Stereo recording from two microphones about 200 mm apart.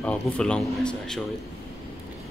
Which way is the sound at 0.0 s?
5° left (ahead or behind).